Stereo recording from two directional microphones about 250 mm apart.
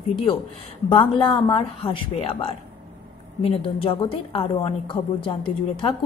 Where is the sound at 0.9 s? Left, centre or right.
Centre.